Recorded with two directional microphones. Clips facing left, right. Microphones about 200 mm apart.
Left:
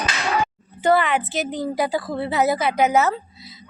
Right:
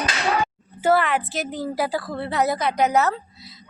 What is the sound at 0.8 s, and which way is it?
A woman's voice, centre (ahead or behind).